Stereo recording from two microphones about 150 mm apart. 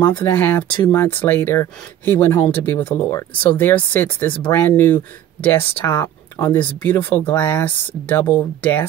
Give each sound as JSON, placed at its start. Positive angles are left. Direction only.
{"t": 0.0, "sound": "speech", "side_deg": 15}